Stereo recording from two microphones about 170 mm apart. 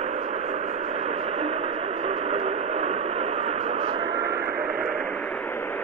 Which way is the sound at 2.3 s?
40° right (ahead or behind).